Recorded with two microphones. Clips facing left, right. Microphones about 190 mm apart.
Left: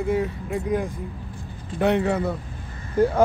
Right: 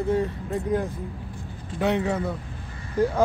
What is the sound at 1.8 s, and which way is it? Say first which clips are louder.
Speech: left 3 dB; 60° left (ahead or behind).